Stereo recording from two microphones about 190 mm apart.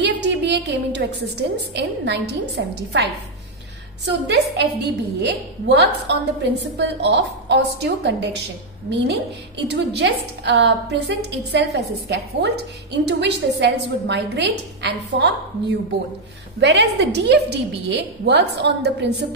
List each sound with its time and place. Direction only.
0.0 s a sound: 65° right (ahead or behind)
1.7 s a woman's voice: 65° right (ahead or behind)
16.5 s a woman's voice: 65° right (ahead or behind)